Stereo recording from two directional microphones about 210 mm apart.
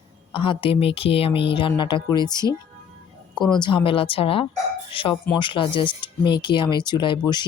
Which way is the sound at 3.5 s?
25° left (ahead or behind).